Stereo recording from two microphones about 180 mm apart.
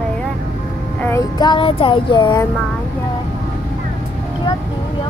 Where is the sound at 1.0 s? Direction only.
10° left (ahead or behind).